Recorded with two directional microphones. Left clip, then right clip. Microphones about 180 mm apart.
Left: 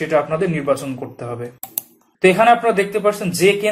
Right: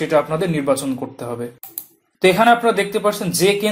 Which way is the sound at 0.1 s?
30° right (ahead or behind).